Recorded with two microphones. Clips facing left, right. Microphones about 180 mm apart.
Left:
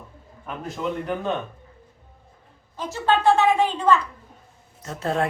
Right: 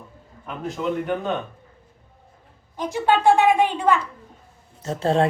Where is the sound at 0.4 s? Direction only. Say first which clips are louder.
Right 2 dB; centre (ahead or behind).